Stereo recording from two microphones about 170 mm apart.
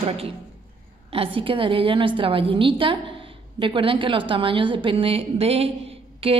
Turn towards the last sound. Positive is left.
turn(degrees=-35)  # may be behind; listen again after turning